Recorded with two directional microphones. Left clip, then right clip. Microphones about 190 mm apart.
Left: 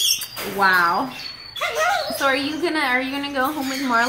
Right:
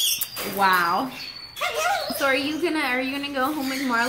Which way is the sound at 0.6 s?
35° right (ahead or behind).